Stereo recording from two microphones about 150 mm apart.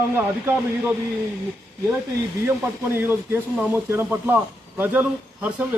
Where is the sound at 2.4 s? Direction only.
15° right (ahead or behind).